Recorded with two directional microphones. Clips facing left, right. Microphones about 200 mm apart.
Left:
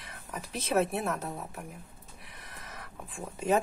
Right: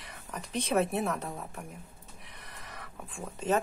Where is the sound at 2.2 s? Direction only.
Centre (ahead or behind).